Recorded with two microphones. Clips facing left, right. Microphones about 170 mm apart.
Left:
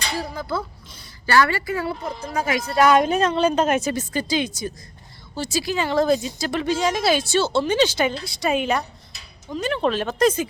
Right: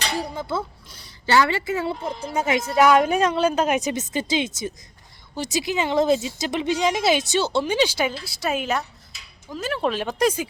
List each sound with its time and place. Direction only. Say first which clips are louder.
0.2 s a woman's voice: even; 25° right (ahead or behind)
2.7 s speech: even; 5° right (ahead or behind)